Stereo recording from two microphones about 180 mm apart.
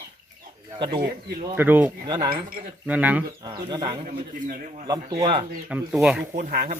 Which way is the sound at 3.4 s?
25° right (ahead or behind).